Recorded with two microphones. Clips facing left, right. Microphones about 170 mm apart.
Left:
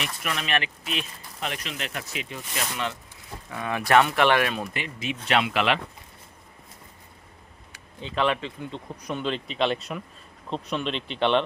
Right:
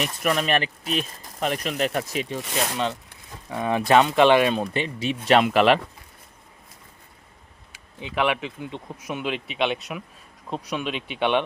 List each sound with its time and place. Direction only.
0.0 s speech: 45° right (ahead or behind)
3.5 s speech: 25° right (ahead or behind); by 5.8 s 45° right (ahead or behind)
8.0 s speech: 10° right (ahead or behind)